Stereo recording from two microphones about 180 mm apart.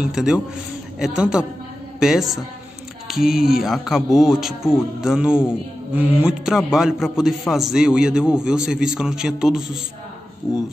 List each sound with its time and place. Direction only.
0.0 s a man's voice: 5° right (ahead or behind)
10.4 s speech: 20° left (ahead or behind)